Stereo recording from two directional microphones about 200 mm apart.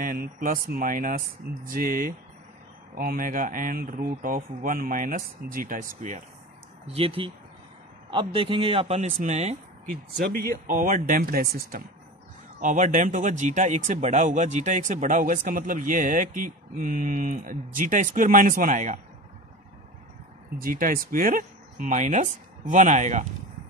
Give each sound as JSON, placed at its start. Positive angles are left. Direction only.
{"t": 0.0, "sound": "a man's voice", "side_deg": -45}
{"t": 6.9, "sound": "speech", "side_deg": -30}
{"t": 10.7, "sound": "a man's voice", "side_deg": -45}
{"t": 20.5, "sound": "speech", "side_deg": -45}